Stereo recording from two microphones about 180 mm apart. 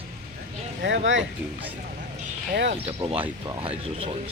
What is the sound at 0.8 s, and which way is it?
Speech, 85° right.